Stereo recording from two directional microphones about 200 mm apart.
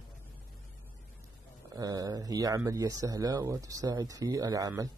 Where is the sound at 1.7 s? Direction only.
20° right (ahead or behind).